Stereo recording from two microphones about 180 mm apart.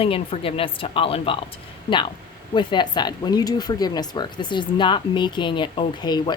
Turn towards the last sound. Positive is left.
turn(degrees=25)  # may be behind; listen again after turning